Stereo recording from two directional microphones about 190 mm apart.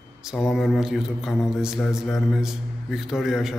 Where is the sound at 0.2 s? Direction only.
Centre (ahead or behind).